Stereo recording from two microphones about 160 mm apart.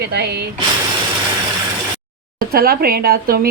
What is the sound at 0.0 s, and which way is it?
Speech, 90° right.